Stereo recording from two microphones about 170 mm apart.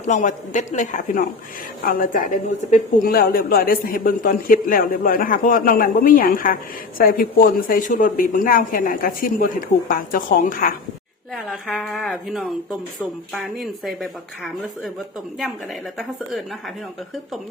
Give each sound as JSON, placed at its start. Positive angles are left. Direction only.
{"t": 0.0, "sound": "a man's voice", "side_deg": 45}
{"t": 11.3, "sound": "speech", "side_deg": 0}